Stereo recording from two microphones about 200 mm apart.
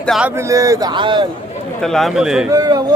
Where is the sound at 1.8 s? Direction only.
Centre (ahead or behind).